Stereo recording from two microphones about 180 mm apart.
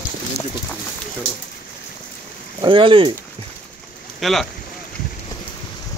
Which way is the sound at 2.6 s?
30° right (ahead or behind).